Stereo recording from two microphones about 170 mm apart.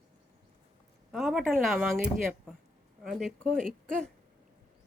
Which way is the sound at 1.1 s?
Centre (ahead or behind).